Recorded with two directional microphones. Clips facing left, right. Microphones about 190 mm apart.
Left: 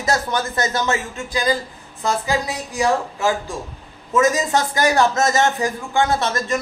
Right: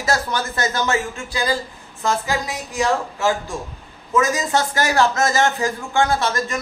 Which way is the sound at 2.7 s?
15° left (ahead or behind).